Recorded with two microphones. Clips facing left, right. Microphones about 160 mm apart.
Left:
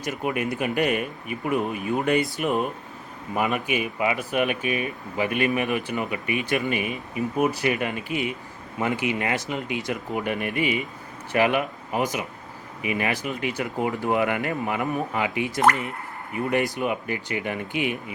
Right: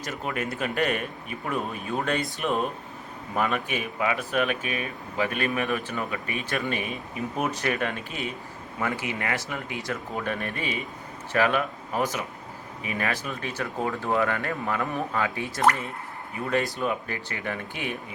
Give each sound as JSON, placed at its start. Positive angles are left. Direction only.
{"t": 0.0, "sound": "speech", "side_deg": 15}